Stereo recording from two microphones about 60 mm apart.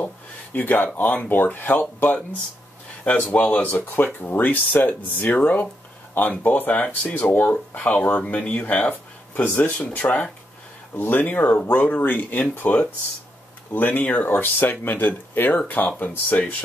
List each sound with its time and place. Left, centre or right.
0.0 s a sound: left
0.9 s speech: left
13.7 s speech: left